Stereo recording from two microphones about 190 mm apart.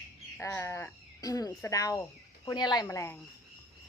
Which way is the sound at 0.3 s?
15° left (ahead or behind).